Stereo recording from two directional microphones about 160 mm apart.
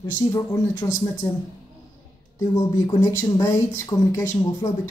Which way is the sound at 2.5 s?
20° left (ahead or behind).